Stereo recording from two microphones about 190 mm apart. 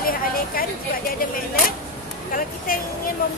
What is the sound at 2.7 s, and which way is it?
Speech, 50° left (ahead or behind).